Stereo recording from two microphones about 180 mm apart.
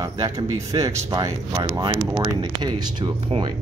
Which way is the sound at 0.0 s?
20° right (ahead or behind).